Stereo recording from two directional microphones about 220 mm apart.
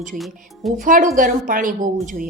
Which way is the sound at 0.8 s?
35° right (ahead or behind).